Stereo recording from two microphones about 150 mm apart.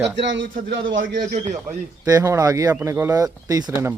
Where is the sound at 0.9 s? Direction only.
60° right (ahead or behind).